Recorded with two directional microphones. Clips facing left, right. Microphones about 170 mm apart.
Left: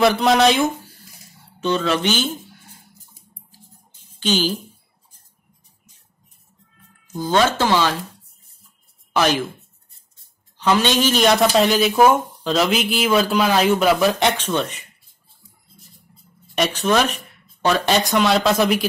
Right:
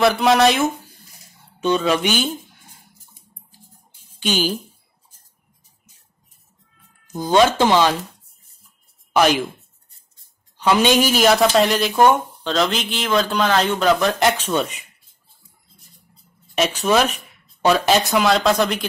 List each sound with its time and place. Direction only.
0.0 s speech: centre (ahead or behind)
1.6 s speech: 15° right (ahead or behind)
3.9 s music: 10° right (ahead or behind)
7.2 s speech: 15° right (ahead or behind)
9.1 s speech: 15° right (ahead or behind)
10.6 s speech: 15° right (ahead or behind); by 14.3 s 5° left (ahead or behind)
14.3 s speech: 10° right (ahead or behind)
16.5 s speech: 5° right (ahead or behind)